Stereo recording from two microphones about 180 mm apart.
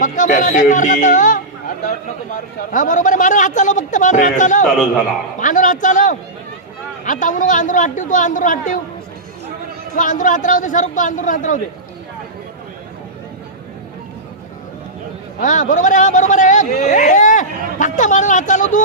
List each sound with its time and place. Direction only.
0.0 s a man's voice: 45° left (ahead or behind)
9.9 s a man's voice: 45° left (ahead or behind)
15.4 s a man's voice: 45° left (ahead or behind)